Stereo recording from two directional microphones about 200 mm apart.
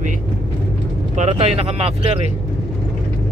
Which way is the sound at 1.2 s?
35° right (ahead or behind).